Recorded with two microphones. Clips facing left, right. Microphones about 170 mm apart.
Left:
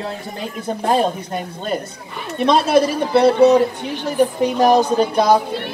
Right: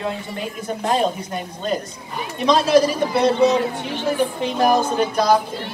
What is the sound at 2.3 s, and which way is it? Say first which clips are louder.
Speech: left 1 dB; 55° left (ahead or behind).